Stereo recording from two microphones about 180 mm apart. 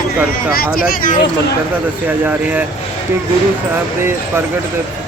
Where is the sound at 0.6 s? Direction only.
50° left (ahead or behind).